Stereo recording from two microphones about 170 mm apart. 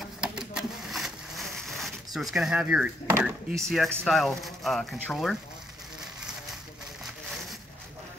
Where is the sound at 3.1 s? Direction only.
15° right (ahead or behind).